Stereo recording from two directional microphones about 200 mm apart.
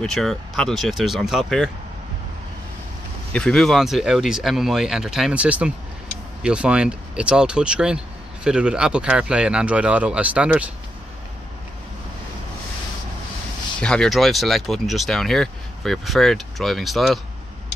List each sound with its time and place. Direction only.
0.0 s speech: centre (ahead or behind)
3.3 s speech: 5° left (ahead or behind)
13.7 s speech: 5° left (ahead or behind)